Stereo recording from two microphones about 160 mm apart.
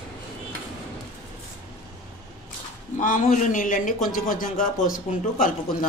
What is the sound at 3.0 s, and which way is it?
A man's voice, 55° left (ahead or behind).